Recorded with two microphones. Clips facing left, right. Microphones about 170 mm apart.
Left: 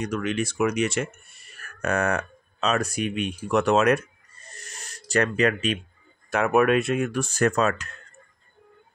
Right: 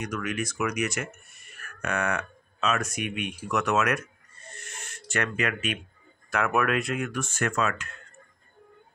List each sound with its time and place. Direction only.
0.0 s speech: 30° left (ahead or behind)
4.5 s a sound: 40° left (ahead or behind)
6.3 s speech: 25° left (ahead or behind)